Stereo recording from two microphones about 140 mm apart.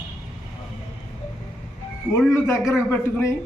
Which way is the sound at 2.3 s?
20° left (ahead or behind).